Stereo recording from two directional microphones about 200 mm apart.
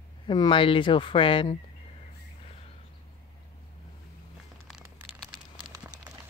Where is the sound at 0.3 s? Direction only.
25° left (ahead or behind).